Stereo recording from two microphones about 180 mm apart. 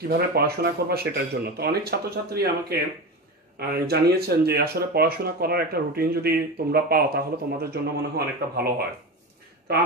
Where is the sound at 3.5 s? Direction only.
60° right (ahead or behind).